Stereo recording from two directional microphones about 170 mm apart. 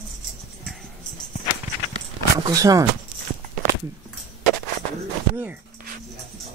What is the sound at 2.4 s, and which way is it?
Speech, 20° right (ahead or behind).